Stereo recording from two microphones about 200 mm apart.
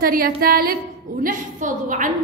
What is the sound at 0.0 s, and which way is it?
A woman's voice, 50° right (ahead or behind).